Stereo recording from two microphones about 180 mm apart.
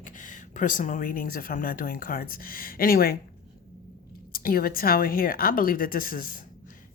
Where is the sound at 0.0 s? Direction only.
45° left (ahead or behind).